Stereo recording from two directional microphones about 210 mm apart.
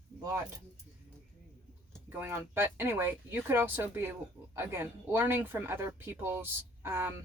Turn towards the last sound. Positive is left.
turn(degrees=-10)  # may be behind; listen again after turning